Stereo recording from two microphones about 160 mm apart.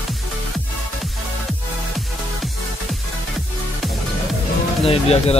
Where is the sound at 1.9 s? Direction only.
Centre (ahead or behind).